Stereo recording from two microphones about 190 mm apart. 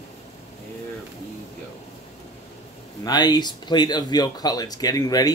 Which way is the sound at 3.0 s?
20° left (ahead or behind).